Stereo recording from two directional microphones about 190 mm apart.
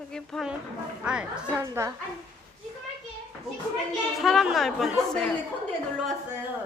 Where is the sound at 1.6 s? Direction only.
15° right (ahead or behind).